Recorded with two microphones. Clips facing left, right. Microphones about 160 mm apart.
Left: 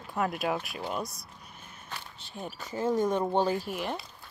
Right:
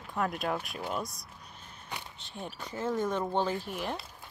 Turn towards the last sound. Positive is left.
turn(degrees=5)  # may be behind; listen again after turning